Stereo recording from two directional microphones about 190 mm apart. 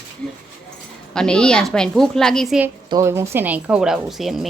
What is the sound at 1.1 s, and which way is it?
A woman's voice, 5° left (ahead or behind).